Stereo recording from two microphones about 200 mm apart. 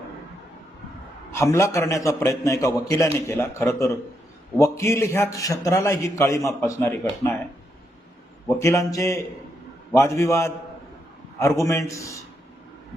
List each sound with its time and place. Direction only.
1.4 s a man's voice: 15° left (ahead or behind)
8.4 s a man's voice: 15° left (ahead or behind)
11.6 s a man's voice: 15° left (ahead or behind)